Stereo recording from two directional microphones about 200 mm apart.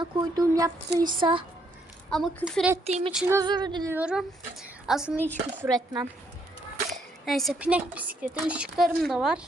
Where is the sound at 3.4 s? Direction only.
20° right (ahead or behind).